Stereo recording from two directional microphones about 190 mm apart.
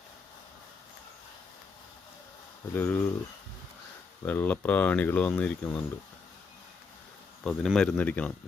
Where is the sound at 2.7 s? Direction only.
10° left (ahead or behind).